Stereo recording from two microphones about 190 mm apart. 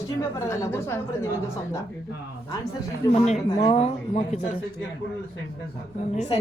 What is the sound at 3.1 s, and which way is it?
Speech, 35° left (ahead or behind).